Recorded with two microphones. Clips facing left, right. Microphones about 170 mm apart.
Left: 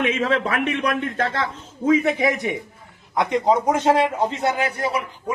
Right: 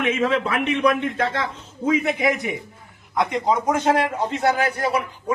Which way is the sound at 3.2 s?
20° left (ahead or behind).